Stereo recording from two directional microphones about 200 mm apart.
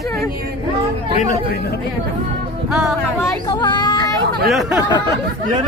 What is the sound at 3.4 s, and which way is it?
Speech, 20° left (ahead or behind).